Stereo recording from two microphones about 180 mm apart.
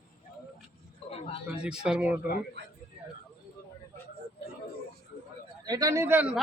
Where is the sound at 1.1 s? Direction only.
35° left (ahead or behind).